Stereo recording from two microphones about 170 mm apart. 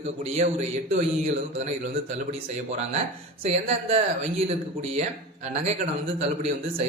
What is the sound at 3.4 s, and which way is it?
A man's voice, 40° right (ahead or behind).